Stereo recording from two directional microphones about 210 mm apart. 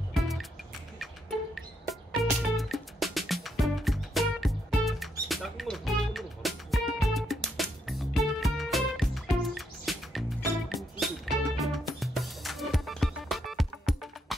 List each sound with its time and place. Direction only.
0.1 s music: centre (ahead or behind)
2.2 s music: centre (ahead or behind)